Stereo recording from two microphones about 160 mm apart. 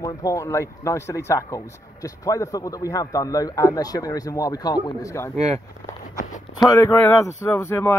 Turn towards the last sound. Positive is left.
turn(degrees=15)  # may be behind; listen again after turning